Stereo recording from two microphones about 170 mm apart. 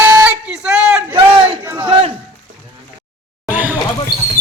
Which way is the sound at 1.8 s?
30° right (ahead or behind).